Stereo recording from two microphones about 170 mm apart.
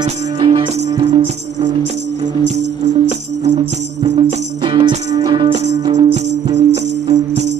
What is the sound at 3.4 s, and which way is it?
Music, 30° right (ahead or behind).